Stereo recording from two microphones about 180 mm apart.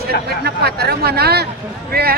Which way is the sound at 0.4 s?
65° right (ahead or behind).